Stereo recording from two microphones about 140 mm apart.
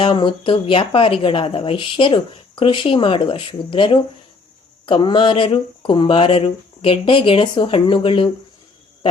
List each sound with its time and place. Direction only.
0.0 s speech: 35° left (ahead or behind)